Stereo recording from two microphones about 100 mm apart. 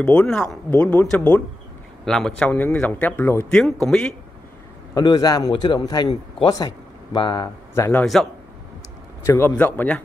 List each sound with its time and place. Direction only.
0.0 s speech: 10° left (ahead or behind)
3.4 s speech: 5° left (ahead or behind)
4.9 s a man's voice: 40° left (ahead or behind)
5.5 s speech: 50° left (ahead or behind)
8.0 s a man's voice: 5° left (ahead or behind)
9.2 s a man's voice: 25° left (ahead or behind)
9.6 s speech: 15° left (ahead or behind)